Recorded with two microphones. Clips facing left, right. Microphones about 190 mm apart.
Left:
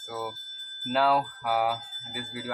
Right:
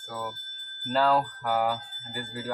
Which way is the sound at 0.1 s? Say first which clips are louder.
Left 1 dB; 5° left (ahead or behind).